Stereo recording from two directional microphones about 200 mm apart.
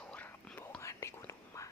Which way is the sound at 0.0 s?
5° left (ahead or behind).